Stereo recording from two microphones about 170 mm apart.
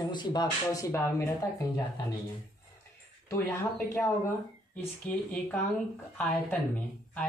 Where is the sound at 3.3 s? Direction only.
20° left (ahead or behind).